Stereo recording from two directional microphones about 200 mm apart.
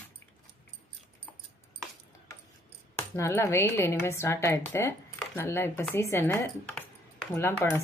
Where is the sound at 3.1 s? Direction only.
15° left (ahead or behind).